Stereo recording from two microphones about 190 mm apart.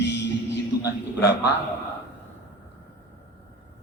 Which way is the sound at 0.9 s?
60° left (ahead or behind).